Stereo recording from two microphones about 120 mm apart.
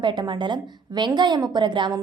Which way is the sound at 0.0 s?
40° right (ahead or behind).